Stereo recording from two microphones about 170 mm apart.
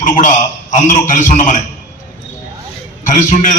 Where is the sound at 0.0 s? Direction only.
45° left (ahead or behind).